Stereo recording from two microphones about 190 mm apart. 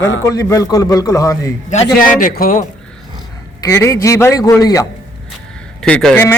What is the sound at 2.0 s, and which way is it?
Speech, 45° left (ahead or behind).